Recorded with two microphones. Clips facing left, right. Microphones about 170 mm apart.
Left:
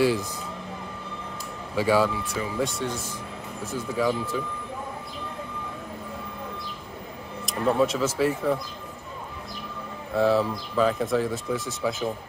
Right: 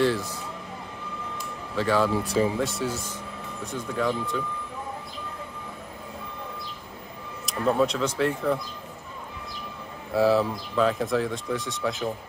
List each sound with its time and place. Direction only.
0.0 s a man's voice: 15° left (ahead or behind)
1.8 s a man's voice: 10° left (ahead or behind)
2.2 s speech: 30° right (ahead or behind)
2.6 s speech: 5° right (ahead or behind)
7.4 s speech: centre (ahead or behind)
10.1 s speech: centre (ahead or behind)